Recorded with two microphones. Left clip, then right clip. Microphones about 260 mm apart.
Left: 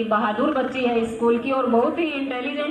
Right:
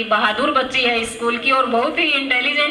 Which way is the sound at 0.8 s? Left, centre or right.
Right.